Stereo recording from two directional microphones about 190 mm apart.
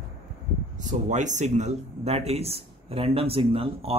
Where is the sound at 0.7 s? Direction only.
40° right (ahead or behind).